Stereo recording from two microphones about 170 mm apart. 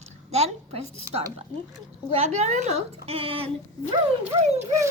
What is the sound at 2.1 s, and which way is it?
Speech, 45° right (ahead or behind).